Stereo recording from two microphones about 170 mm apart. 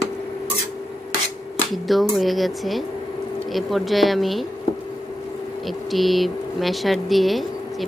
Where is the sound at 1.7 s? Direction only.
Centre (ahead or behind).